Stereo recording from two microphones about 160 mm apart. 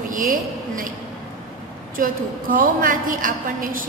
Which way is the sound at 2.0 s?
60° right (ahead or behind).